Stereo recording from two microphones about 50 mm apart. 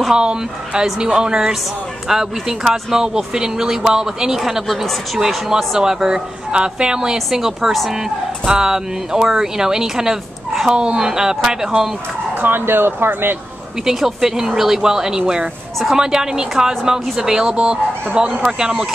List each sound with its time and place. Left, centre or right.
0.1 s speech: centre
12.4 s speech: right
13.8 s speech: centre